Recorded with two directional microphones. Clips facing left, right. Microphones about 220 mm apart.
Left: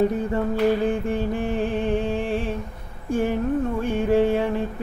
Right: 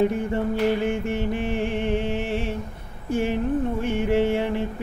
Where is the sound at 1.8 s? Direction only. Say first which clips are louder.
Left 1 dB; 25° right (ahead or behind).